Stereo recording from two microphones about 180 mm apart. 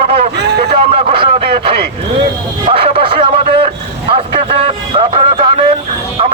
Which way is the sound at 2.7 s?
30° right (ahead or behind).